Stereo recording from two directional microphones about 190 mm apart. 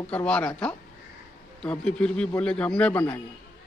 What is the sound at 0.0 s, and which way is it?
A man's voice, 5° left (ahead or behind).